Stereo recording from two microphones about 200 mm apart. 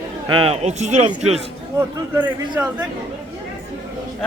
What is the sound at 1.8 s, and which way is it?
Speech, 10° right (ahead or behind).